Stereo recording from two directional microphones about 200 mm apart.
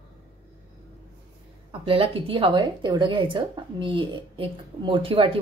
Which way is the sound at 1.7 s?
25° right (ahead or behind).